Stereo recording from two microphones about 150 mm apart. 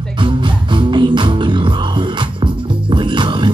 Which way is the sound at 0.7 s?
30° right (ahead or behind).